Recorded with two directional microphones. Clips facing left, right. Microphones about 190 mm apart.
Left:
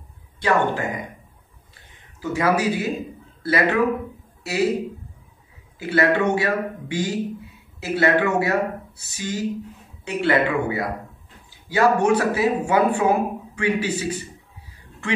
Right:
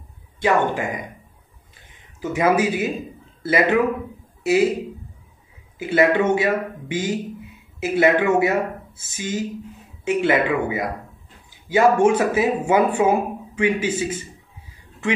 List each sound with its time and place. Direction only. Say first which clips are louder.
0.4 s speech: right 1 dB; 20° right (ahead or behind)
2.3 s a man's voice: right 2 dB; 20° right (ahead or behind)
5.8 s a man's voice: right 2 dB; 20° right (ahead or behind)